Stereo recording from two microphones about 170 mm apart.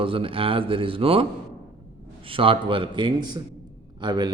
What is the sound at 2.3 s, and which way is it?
A man's voice, 30° right (ahead or behind).